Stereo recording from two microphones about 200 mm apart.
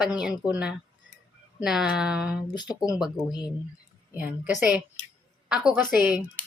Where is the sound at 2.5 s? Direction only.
20° left (ahead or behind).